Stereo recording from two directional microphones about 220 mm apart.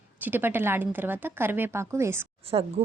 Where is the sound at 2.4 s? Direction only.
25° right (ahead or behind).